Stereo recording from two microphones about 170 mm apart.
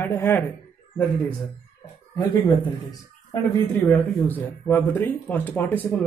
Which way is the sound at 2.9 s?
20° left (ahead or behind).